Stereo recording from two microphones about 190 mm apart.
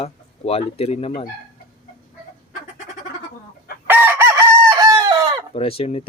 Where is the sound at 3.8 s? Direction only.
10° right (ahead or behind).